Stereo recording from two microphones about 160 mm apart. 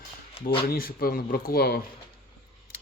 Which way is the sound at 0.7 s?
65° left (ahead or behind).